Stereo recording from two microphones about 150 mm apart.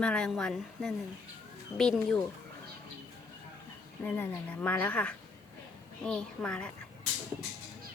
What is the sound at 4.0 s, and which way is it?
A woman's voice, 10° left (ahead or behind).